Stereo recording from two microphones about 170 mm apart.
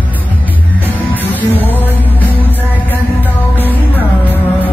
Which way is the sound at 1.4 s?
10° left (ahead or behind).